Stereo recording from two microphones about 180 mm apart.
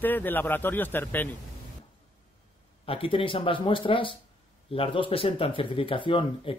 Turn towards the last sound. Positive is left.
turn(degrees=25)  # may be behind; listen again after turning